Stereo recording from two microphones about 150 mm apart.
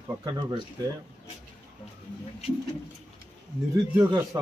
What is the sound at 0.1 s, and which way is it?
Speech, 25° right (ahead or behind).